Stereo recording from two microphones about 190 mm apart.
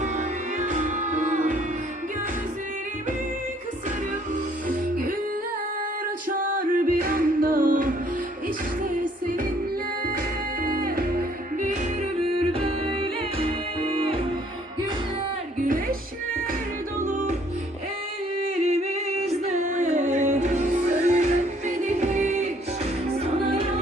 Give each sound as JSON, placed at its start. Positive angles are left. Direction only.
{"t": 0.0, "sound": "music", "side_deg": -40}
{"t": 6.2, "sound": "music", "side_deg": -45}
{"t": 10.6, "sound": "music", "side_deg": -50}
{"t": 12.5, "sound": "music", "side_deg": -30}
{"t": 15.6, "sound": "music", "side_deg": -45}
{"t": 17.0, "sound": "music", "side_deg": -40}
{"t": 18.6, "sound": "music", "side_deg": -35}